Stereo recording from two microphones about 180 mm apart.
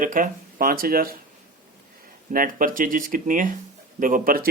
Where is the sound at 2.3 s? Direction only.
50° right (ahead or behind).